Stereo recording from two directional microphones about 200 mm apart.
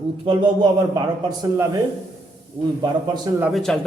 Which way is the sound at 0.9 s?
20° right (ahead or behind).